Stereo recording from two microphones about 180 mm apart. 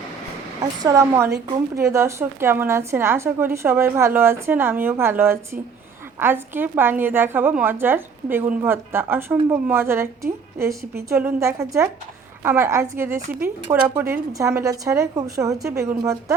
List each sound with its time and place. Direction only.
0.6 s a woman's voice: 20° right (ahead or behind)